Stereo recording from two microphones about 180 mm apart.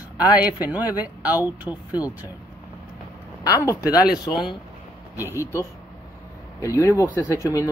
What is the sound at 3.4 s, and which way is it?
Speech, 20° left (ahead or behind).